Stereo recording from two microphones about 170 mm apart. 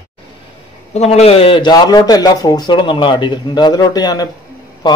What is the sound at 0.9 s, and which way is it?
A man's voice, 40° left (ahead or behind).